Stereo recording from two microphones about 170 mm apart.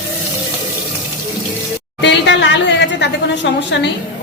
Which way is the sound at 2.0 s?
90° left.